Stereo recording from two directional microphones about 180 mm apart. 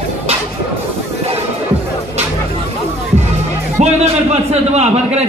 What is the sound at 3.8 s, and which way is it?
A man's voice, 35° right (ahead or behind).